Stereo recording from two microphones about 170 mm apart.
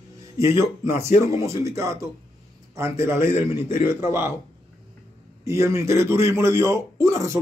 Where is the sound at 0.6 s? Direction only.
15° right (ahead or behind).